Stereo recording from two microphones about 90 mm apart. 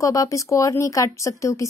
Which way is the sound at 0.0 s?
40° left (ahead or behind).